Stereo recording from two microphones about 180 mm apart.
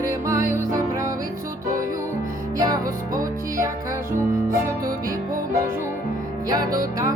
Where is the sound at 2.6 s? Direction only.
20° right (ahead or behind).